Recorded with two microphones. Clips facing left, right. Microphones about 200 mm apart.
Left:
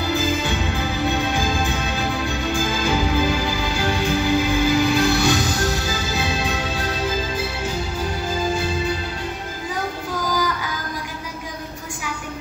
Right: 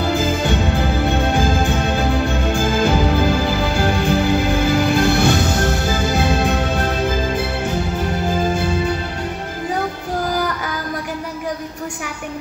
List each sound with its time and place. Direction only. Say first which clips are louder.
0.0 s music: right 3 dB; 50° right (ahead or behind)